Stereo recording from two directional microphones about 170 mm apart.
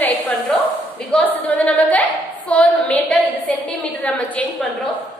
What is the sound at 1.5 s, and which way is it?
A woman's voice, 10° left (ahead or behind).